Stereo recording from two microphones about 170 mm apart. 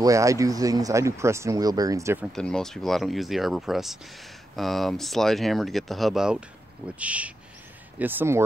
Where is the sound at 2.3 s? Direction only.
5° left (ahead or behind).